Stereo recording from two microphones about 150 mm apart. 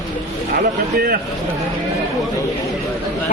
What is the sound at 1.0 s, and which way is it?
Speech, 80° right.